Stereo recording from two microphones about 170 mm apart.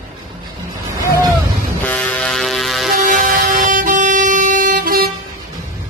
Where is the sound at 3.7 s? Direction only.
50° right (ahead or behind).